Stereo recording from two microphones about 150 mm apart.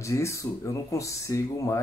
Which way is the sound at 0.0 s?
20° left (ahead or behind).